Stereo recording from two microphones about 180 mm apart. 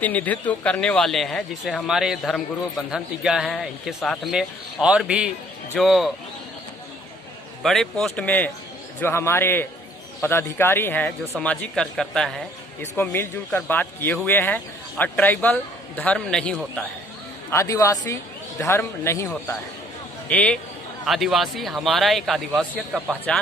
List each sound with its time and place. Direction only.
0.0 s speech: 10° left (ahead or behind)
7.6 s speech: centre (ahead or behind)
17.5 s a man's voice: 15° left (ahead or behind); by 23.1 s centre (ahead or behind)